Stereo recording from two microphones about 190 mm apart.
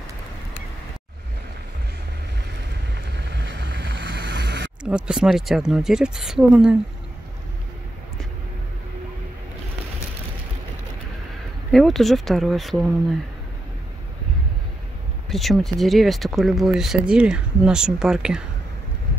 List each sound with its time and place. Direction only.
2.9 s boat: 65° right (ahead or behind)
4.8 s speech: 5° right (ahead or behind)
11.7 s speech: centre (ahead or behind)
15.2 s speech: centre (ahead or behind)